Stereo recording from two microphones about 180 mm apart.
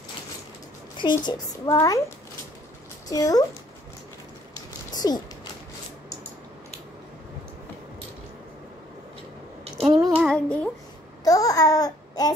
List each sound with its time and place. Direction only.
0.9 s a child's voice: 25° left (ahead or behind)
4.9 s a sound: 20° left (ahead or behind)
10.0 s child singing: centre (ahead or behind)
11.2 s babbling: 20° left (ahead or behind)